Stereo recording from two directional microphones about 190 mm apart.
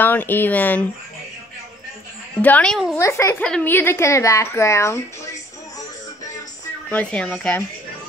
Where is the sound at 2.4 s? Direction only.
10° left (ahead or behind).